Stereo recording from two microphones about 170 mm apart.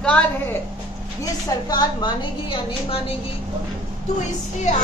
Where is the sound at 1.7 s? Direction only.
25° left (ahead or behind).